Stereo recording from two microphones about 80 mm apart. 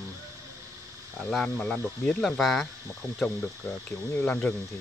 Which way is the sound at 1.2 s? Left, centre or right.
Centre.